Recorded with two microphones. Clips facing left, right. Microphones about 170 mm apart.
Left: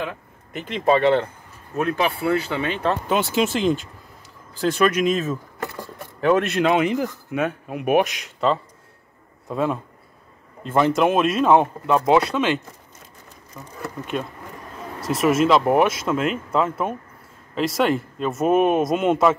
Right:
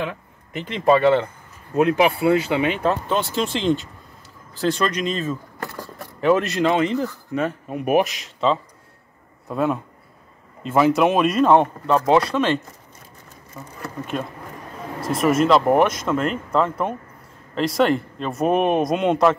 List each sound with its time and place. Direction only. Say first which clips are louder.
0.8 s speech: right 2 dB; 5° right (ahead or behind)
1.8 s speech: right 5 dB; 20° right (ahead or behind)
3.1 s speech: left 2 dB; 5° left (ahead or behind)
15.0 s speech: even; centre (ahead or behind)